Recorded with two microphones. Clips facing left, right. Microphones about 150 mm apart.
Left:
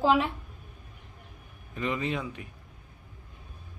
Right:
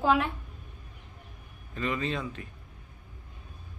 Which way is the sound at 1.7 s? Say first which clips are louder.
Left 1 dB; 15° left (ahead or behind).